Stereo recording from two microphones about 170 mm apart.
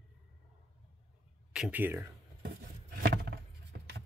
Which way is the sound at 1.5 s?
5° right (ahead or behind).